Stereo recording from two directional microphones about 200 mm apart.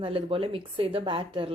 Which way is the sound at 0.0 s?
25° right (ahead or behind).